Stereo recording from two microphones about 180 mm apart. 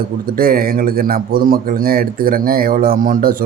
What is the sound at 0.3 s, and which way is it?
Speech, 55° right (ahead or behind).